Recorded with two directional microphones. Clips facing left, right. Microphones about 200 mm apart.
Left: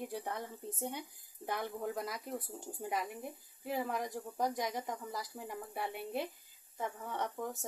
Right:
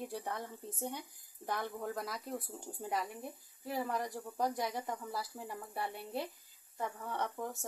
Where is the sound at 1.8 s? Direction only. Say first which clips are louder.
Left 1 dB; centre (ahead or behind).